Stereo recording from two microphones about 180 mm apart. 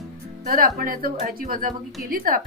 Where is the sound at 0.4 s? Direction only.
50° right (ahead or behind).